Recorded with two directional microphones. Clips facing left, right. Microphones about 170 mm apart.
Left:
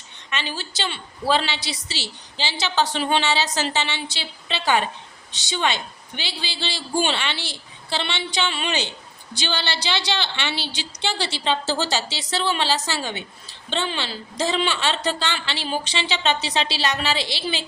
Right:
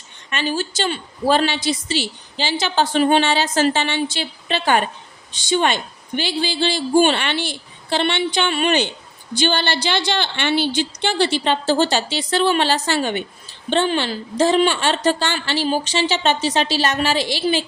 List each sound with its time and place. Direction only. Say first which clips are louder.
0.3 s a woman's voice: right 8 dB; 45° right (ahead or behind)